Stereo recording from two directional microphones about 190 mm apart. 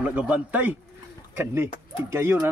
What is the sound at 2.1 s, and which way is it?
Speech, 10° right (ahead or behind).